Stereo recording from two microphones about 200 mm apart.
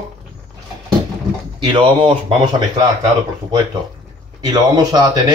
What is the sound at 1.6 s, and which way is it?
Speech, 25° right (ahead or behind).